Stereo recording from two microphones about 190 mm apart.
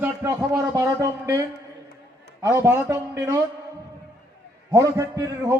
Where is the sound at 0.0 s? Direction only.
10° right (ahead or behind).